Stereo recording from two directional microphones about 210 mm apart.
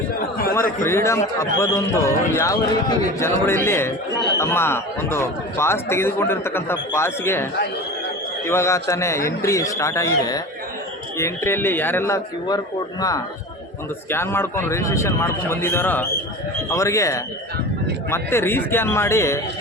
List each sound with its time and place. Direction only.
0.2 s a sound: 45° left (ahead or behind)
0.9 s speech: 15° left (ahead or behind)
8.4 s speech: 10° left (ahead or behind)